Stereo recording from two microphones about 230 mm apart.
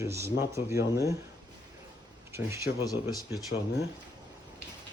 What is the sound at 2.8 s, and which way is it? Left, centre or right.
Speech, centre.